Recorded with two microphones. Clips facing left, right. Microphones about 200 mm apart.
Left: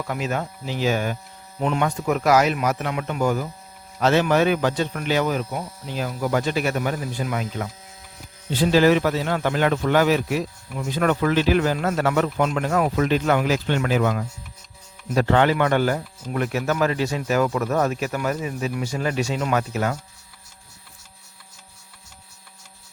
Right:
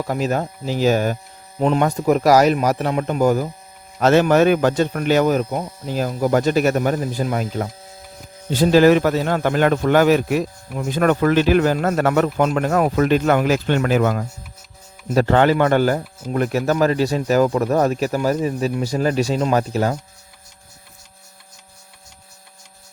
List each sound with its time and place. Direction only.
0.0 s a man's voice: 35° right (ahead or behind)